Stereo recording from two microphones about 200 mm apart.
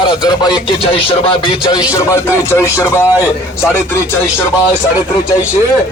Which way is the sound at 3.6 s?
10° left (ahead or behind).